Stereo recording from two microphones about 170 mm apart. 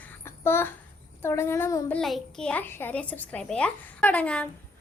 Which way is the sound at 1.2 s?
15° left (ahead or behind).